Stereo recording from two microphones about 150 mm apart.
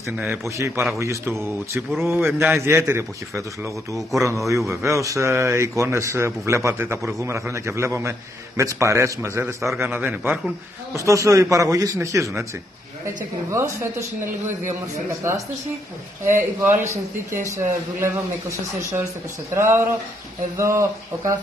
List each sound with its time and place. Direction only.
0.2 s speech: 15° right (ahead or behind)
16.3 s speech: 15° right (ahead or behind)
19.5 s speech: 15° right (ahead or behind)